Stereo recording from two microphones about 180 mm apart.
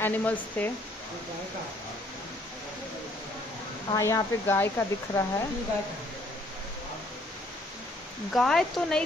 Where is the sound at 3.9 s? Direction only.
15° left (ahead or behind).